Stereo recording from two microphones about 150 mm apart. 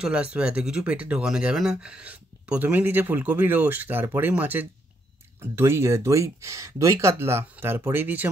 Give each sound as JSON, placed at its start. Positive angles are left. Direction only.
{"t": 0.0, "sound": "speech", "side_deg": -10}